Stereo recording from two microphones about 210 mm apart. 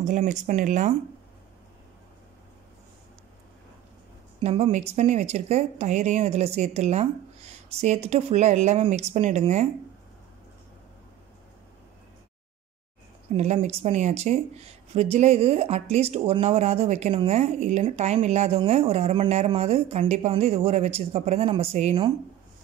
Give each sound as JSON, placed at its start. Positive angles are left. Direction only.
{"t": 0.0, "sound": "speech", "side_deg": -35}
{"t": 4.4, "sound": "speech", "side_deg": -30}
{"t": 13.4, "sound": "speech", "side_deg": -30}